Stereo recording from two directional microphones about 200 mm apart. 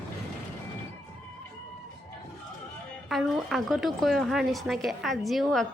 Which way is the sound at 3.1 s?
Centre (ahead or behind).